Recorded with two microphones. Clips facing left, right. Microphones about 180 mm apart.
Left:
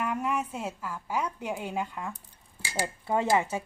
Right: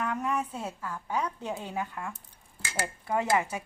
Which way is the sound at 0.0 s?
10° left (ahead or behind).